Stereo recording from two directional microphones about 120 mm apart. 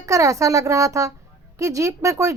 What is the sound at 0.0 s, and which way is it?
A woman's voice, 25° right (ahead or behind).